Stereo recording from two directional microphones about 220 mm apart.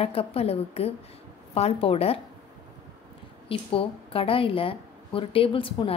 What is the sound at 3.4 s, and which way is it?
A woman's voice, 25° left (ahead or behind).